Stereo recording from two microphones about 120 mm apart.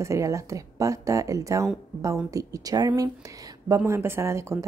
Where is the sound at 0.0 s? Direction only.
25° right (ahead or behind).